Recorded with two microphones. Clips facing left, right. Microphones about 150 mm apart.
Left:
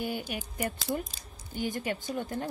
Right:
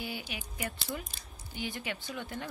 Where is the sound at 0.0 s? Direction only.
50° left (ahead or behind).